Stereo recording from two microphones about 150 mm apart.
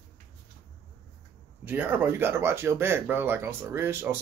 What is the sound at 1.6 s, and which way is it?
A man's voice, 10° right (ahead or behind).